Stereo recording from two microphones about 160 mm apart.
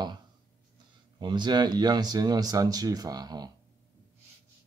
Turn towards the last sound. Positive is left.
turn(degrees=-25)  # may be behind; listen again after turning